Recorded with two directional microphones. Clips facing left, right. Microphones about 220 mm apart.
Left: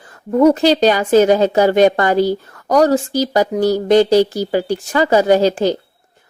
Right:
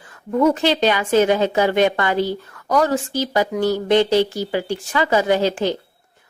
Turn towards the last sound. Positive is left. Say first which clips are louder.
# left 5 dB
turn(degrees=40)  # may be behind; listen again after turning